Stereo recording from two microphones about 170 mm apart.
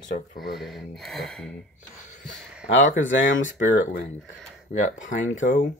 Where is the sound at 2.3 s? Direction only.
5° right (ahead or behind).